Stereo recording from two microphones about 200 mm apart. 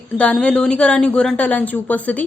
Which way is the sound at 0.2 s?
5° left (ahead or behind).